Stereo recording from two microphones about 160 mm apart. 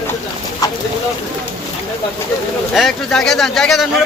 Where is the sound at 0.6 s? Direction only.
20° left (ahead or behind).